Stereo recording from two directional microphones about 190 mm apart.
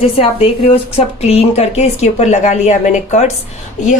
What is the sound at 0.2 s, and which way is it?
A woman's voice, 30° left (ahead or behind).